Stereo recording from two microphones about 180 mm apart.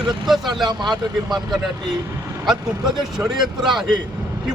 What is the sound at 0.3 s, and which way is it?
Speech, centre (ahead or behind).